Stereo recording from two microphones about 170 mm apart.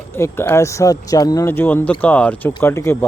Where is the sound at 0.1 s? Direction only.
15° left (ahead or behind).